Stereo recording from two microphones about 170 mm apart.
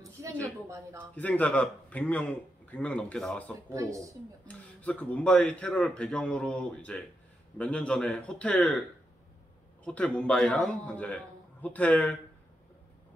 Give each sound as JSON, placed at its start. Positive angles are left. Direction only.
{"t": 0.2, "sound": "a sound", "side_deg": -15}
{"t": 1.1, "sound": "speech", "side_deg": 10}
{"t": 9.8, "sound": "speech", "side_deg": 5}